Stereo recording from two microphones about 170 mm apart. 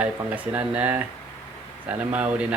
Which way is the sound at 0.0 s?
10° right (ahead or behind).